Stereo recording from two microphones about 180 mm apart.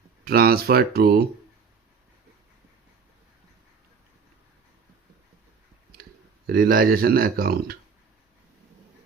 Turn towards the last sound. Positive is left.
turn(degrees=-55)  # may be behind; listen again after turning